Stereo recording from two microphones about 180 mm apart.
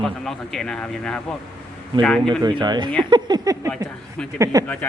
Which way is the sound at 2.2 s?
25° right (ahead or behind).